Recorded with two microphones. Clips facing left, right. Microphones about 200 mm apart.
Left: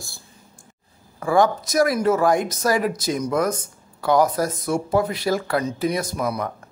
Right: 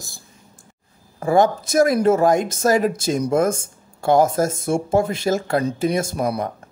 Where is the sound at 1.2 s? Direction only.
25° right (ahead or behind).